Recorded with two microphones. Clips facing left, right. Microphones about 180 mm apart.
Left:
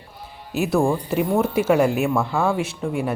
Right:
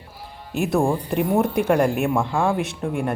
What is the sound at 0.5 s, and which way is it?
Speech, centre (ahead or behind).